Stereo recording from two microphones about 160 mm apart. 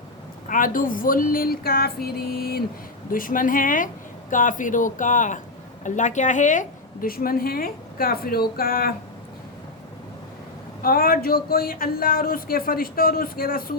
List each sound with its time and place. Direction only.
0.4 s a woman's voice: 55° left (ahead or behind)
3.1 s a woman's voice: 60° left (ahead or behind)
10.8 s a woman's voice: 65° left (ahead or behind)